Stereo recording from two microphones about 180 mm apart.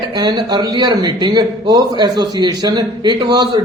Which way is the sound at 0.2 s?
25° right (ahead or behind).